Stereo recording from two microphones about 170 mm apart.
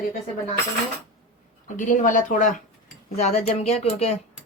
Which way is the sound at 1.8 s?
50° left (ahead or behind).